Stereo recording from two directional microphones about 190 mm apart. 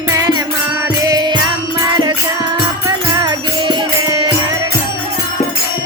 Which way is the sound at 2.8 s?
20° right (ahead or behind).